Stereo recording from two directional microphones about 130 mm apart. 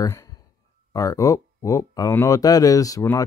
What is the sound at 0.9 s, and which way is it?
Speech, 25° left (ahead or behind).